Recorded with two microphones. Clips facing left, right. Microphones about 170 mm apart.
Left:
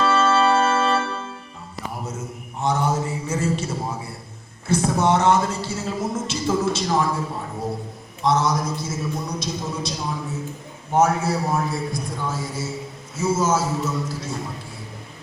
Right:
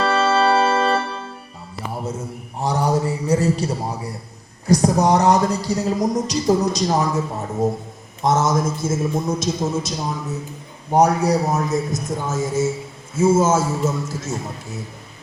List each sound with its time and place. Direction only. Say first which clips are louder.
0.0 s organ: right 1 dB; 35° right (ahead or behind)
2.6 s a sound: right 2 dB; 35° right (ahead or behind)
4.6 s a man's voice: right 4 dB; 40° right (ahead or behind)
8.2 s a man's voice: right 2 dB; 45° right (ahead or behind)